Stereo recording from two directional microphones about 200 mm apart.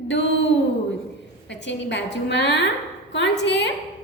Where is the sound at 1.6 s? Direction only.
65° left (ahead or behind).